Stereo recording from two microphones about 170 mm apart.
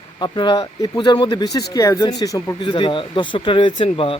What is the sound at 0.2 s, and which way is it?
Speech, 25° left (ahead or behind).